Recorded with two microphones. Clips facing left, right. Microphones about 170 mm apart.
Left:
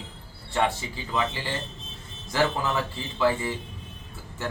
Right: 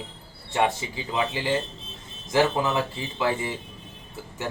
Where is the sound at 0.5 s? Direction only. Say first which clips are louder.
Right 2 dB; 20° right (ahead or behind).